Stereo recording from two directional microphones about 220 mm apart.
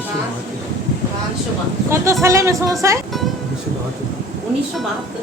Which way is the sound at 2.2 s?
15° right (ahead or behind).